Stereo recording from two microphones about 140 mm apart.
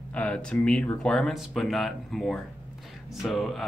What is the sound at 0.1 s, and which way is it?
Speech, 10° left (ahead or behind).